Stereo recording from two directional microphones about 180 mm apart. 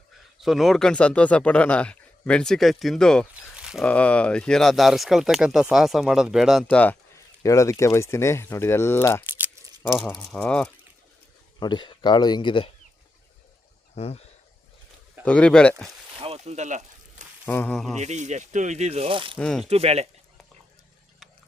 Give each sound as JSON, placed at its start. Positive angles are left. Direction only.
{"t": 0.3, "sound": "speech", "side_deg": 0}
{"t": 3.3, "sound": "a sound", "side_deg": -5}
{"t": 3.8, "sound": "speech", "side_deg": 5}
{"t": 7.4, "sound": "speech", "side_deg": 20}
{"t": 11.6, "sound": "speech", "side_deg": 25}
{"t": 13.9, "sound": "speech", "side_deg": 35}
{"t": 15.2, "sound": "speech", "side_deg": 5}
{"t": 16.2, "sound": "a sound", "side_deg": -35}
{"t": 17.4, "sound": "speech", "side_deg": 10}
{"t": 17.9, "sound": "speech", "side_deg": -40}
{"t": 19.4, "sound": "speech", "side_deg": 5}
{"t": 19.6, "sound": "speech", "side_deg": -35}